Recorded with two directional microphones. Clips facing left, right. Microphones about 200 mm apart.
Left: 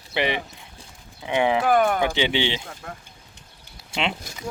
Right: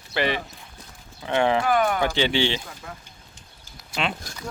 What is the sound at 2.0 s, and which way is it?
Speech, 15° left (ahead or behind).